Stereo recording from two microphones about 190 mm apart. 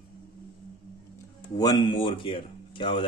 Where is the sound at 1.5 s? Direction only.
20° left (ahead or behind).